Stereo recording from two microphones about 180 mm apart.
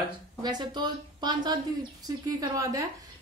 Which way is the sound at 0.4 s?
25° right (ahead or behind).